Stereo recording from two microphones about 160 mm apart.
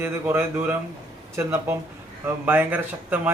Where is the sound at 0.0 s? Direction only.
15° right (ahead or behind).